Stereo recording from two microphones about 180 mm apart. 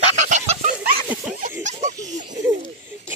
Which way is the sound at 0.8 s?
55° right (ahead or behind).